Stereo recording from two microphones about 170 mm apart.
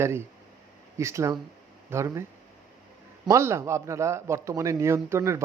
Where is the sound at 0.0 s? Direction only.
15° right (ahead or behind).